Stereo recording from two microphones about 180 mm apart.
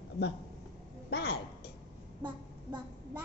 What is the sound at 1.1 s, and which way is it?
Speech, 65° left (ahead or behind).